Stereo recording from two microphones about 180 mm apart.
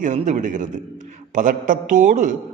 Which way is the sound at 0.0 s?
45° right (ahead or behind).